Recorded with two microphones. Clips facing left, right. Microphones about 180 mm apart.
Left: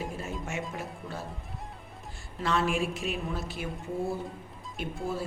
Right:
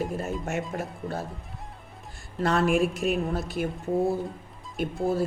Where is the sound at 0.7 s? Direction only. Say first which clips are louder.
Right 6 dB; 45° right (ahead or behind).